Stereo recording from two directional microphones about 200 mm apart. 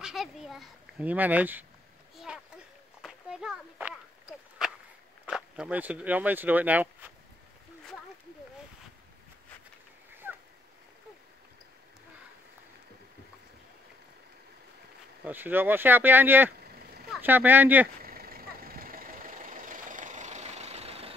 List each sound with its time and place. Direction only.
0.0 s speech: centre (ahead or behind)
2.1 s a sound: 5° right (ahead or behind)
5.2 s speech: 5° right (ahead or behind)
15.2 s speech: 10° right (ahead or behind)
18.0 s vehicle: 50° right (ahead or behind); by 21.1 s 30° right (ahead or behind)